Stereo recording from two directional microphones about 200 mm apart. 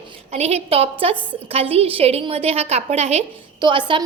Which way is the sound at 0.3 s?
30° right (ahead or behind).